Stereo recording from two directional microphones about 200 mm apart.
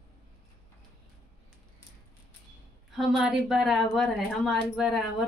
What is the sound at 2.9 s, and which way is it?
Speech, centre (ahead or behind).